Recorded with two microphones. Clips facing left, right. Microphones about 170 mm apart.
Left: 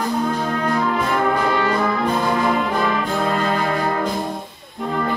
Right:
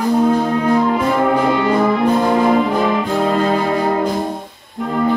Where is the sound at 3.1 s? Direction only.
30° right (ahead or behind).